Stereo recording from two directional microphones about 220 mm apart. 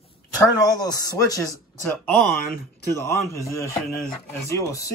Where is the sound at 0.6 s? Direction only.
15° left (ahead or behind).